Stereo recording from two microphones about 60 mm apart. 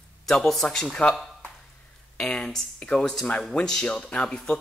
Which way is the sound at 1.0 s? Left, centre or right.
Centre.